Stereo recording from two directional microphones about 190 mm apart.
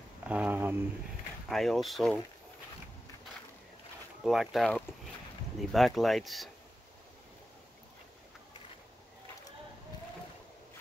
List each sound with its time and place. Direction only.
0.3 s speech: 10° right (ahead or behind)
1.5 s speech: centre (ahead or behind)
4.2 s speech: centre (ahead or behind)